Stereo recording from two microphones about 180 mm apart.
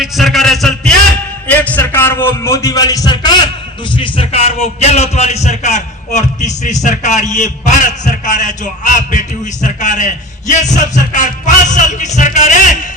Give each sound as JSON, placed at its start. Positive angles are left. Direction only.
{"t": 0.0, "sound": "a man's voice", "side_deg": 0}